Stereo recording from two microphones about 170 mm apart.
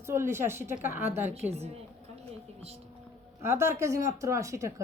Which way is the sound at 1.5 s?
40° right (ahead or behind).